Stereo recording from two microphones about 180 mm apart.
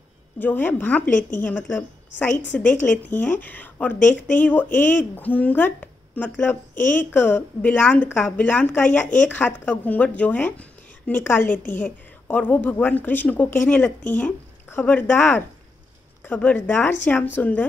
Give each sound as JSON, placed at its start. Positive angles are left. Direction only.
{"t": 0.4, "sound": "speech", "side_deg": 10}